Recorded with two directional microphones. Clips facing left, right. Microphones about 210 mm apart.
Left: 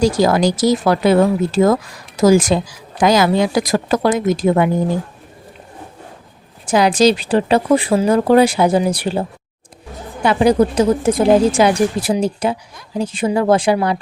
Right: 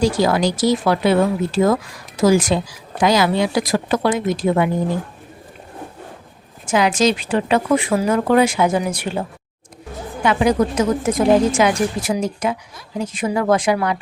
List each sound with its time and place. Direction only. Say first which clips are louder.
0.0 s speech: left 3 dB; 40° left (ahead or behind)
6.7 s speech: left 4 dB; 35° left (ahead or behind)
10.2 s speech: left 3 dB; 35° left (ahead or behind)